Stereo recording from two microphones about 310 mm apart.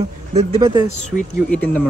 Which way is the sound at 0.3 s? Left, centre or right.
Centre.